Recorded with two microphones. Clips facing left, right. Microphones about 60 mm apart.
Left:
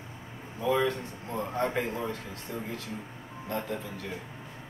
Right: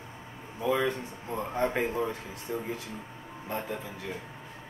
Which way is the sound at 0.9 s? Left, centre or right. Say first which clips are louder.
Even; right.